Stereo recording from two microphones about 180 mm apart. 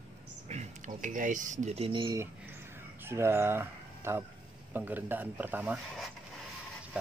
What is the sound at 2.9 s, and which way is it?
Speech, 15° right (ahead or behind).